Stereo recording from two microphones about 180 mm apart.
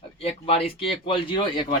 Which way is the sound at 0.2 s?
35° left (ahead or behind).